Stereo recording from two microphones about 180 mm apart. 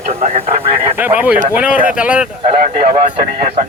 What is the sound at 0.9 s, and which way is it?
Speech, 10° right (ahead or behind).